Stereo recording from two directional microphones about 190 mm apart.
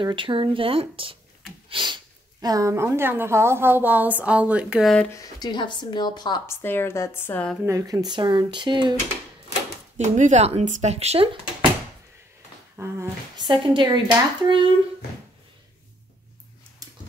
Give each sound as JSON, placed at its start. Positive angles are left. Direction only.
{"t": 0.0, "sound": "speech", "side_deg": -25}
{"t": 1.7, "sound": "a sound", "side_deg": -25}
{"t": 2.4, "sound": "a woman's voice", "side_deg": -15}
{"t": 5.1, "sound": "a woman's voice", "side_deg": 20}
{"t": 7.6, "sound": "speech", "side_deg": -15}
{"t": 9.9, "sound": "speech", "side_deg": -40}
{"t": 12.7, "sound": "a sound", "side_deg": -15}
{"t": 13.5, "sound": "speech", "side_deg": -25}
{"t": 16.8, "sound": "a sound", "side_deg": -20}